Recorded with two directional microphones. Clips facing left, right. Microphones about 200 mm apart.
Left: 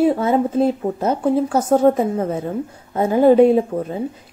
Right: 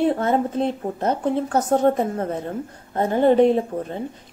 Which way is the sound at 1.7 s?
35° left (ahead or behind).